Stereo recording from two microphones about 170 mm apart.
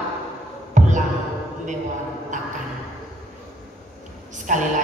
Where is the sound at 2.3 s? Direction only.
45° right (ahead or behind).